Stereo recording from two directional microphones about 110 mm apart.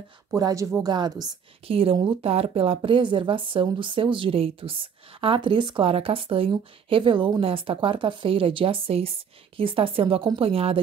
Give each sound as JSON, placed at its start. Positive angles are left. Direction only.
{"t": 0.3, "sound": "a woman's voice", "side_deg": -30}
{"t": 1.7, "sound": "a woman's voice", "side_deg": -55}